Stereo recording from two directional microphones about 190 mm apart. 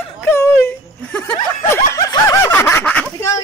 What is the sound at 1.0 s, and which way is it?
Snicker, 5° left (ahead or behind).